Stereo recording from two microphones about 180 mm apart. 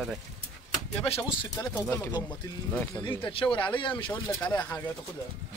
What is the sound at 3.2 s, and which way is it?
Speech, 30° left (ahead or behind).